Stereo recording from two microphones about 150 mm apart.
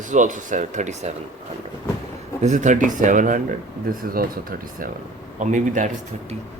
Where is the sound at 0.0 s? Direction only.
55° right (ahead or behind).